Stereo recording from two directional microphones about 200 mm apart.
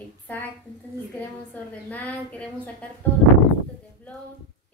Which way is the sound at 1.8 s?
10° left (ahead or behind).